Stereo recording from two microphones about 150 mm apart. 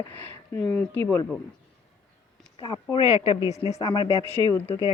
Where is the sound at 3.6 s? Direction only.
40° left (ahead or behind).